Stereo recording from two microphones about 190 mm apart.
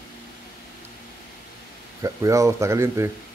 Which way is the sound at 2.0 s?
15° right (ahead or behind).